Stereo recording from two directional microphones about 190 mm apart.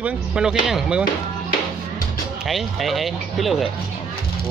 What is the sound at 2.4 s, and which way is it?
Speech, centre (ahead or behind).